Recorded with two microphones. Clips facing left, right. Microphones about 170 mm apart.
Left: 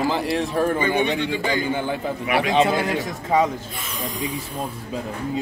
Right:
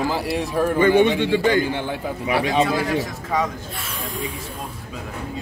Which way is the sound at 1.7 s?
Centre (ahead or behind).